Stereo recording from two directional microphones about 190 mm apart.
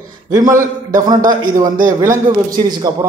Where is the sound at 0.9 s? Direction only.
20° right (ahead or behind).